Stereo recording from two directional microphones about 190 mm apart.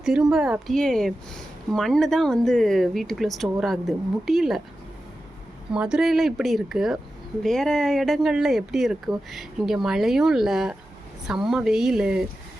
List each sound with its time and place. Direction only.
0.0 s speech: 5° right (ahead or behind)
5.7 s speech: 5° right (ahead or behind)